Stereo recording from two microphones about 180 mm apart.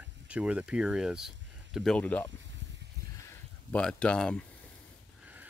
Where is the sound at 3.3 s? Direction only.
5° left (ahead or behind).